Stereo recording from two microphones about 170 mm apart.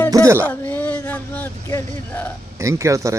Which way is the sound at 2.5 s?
15° right (ahead or behind).